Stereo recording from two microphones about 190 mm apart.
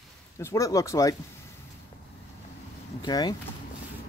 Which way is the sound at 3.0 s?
20° left (ahead or behind).